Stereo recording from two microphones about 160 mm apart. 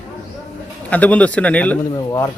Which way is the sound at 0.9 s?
10° left (ahead or behind).